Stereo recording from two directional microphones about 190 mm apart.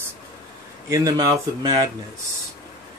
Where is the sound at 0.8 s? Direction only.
20° right (ahead or behind).